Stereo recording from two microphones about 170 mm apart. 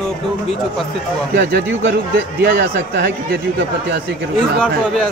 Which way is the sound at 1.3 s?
85° right.